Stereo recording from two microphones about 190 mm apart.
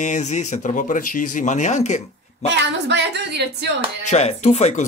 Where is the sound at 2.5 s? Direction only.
65° right (ahead or behind).